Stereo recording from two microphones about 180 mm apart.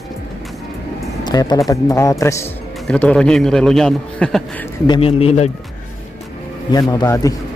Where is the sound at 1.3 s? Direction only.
20° left (ahead or behind); by 4.4 s 5° left (ahead or behind).